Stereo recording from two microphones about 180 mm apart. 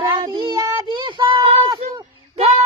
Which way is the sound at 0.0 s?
25° right (ahead or behind).